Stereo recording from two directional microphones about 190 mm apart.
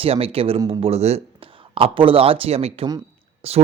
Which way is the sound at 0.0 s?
30° right (ahead or behind).